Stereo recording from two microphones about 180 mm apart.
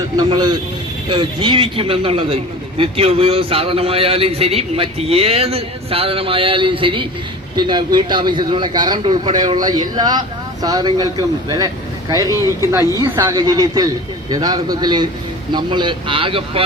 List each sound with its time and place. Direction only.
0.2 s a man's voice: 25° right (ahead or behind)
12.3 s speech: 20° left (ahead or behind)
13.0 s a man's voice: 20° right (ahead or behind)